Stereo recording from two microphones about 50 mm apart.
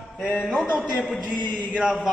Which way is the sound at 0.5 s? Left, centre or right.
Centre.